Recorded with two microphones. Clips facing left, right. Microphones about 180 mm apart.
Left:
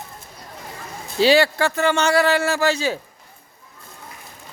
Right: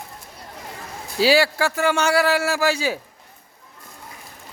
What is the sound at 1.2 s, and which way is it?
Speech, 5° right (ahead or behind).